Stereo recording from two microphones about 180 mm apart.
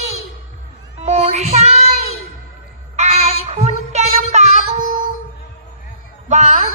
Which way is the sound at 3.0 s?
40° right (ahead or behind).